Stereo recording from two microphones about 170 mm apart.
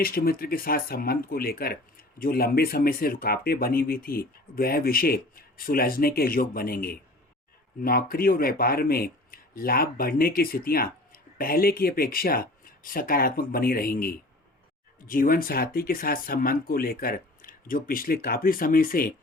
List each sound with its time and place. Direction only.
0.0 s speech: 60° left (ahead or behind)